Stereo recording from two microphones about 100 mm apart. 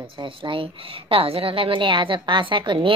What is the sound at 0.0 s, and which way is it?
Speech, 60° right (ahead or behind).